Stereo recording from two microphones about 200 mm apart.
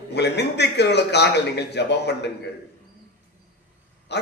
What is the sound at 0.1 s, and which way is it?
A man's voice, 55° left (ahead or behind).